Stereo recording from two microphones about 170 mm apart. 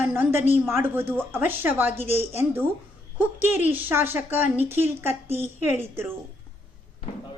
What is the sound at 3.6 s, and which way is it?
A woman's voice, 10° right (ahead or behind).